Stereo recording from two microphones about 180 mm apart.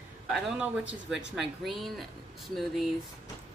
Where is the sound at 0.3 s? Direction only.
5° right (ahead or behind).